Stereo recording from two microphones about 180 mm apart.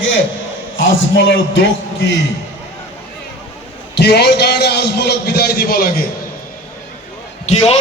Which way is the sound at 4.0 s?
70° left (ahead or behind).